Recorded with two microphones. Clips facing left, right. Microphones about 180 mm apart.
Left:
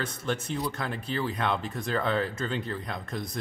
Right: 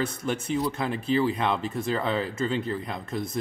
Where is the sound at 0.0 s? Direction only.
10° right (ahead or behind).